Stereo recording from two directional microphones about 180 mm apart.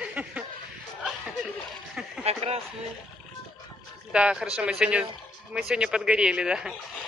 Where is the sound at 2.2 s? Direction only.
35° right (ahead or behind).